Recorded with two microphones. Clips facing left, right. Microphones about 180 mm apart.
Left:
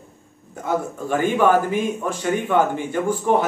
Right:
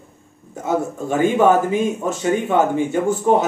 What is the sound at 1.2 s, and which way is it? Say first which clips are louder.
Speech: right 3 dB; 20° right (ahead or behind).